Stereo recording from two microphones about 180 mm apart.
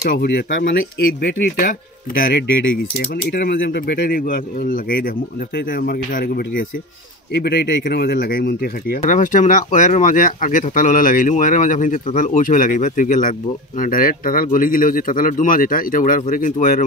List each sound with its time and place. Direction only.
0.0 s speech: 60° left (ahead or behind)
7.3 s speech: 65° left (ahead or behind)
9.0 s speech: 45° left (ahead or behind)